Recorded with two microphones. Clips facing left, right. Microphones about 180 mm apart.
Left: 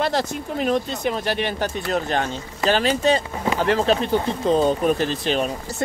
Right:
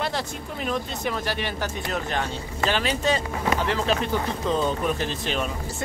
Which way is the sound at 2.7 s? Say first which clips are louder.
Left 6 dB; 35° left (ahead or behind).